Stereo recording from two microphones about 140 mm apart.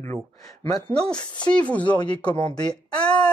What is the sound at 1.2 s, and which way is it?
Speech, 30° left (ahead or behind).